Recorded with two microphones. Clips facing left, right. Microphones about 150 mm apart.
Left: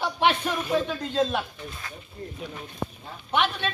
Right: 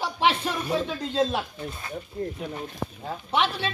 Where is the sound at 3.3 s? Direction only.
30° right (ahead or behind).